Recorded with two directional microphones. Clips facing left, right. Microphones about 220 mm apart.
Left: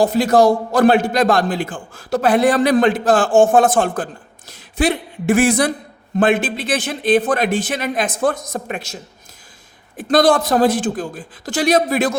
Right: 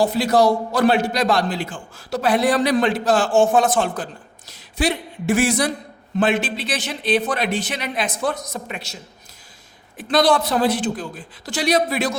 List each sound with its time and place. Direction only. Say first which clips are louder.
0.0 s a man's voice: left 3 dB; 45° left (ahead or behind)
10.0 s a man's voice: left 3 dB; 50° left (ahead or behind)